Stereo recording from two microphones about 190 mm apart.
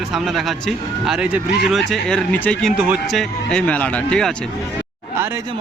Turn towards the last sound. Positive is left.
turn(degrees=5)  # may be behind; listen again after turning